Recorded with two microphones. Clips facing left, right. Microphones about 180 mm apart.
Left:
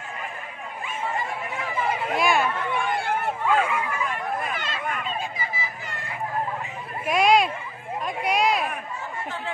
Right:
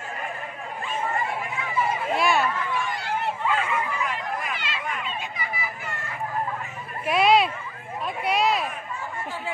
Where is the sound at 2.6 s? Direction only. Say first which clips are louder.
Left 3 dB; 60° left (ahead or behind).